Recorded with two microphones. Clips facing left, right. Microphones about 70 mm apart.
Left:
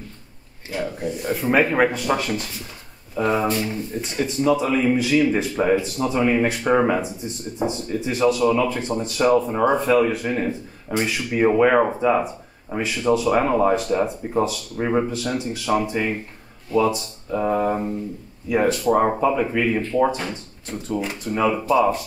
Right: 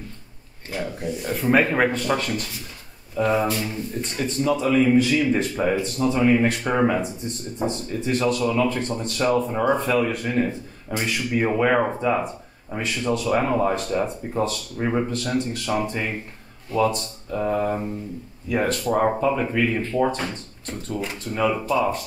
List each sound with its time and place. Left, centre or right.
0.7 s speech: centre